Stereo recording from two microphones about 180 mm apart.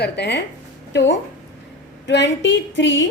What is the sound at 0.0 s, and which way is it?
Speech, 70° left (ahead or behind).